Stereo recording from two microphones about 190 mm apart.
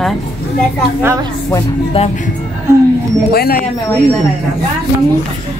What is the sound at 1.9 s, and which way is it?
Speech, 30° left (ahead or behind).